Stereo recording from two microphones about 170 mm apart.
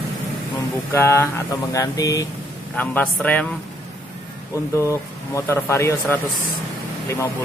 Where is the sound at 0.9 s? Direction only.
15° left (ahead or behind).